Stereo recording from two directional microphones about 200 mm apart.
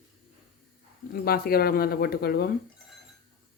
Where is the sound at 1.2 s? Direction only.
50° left (ahead or behind).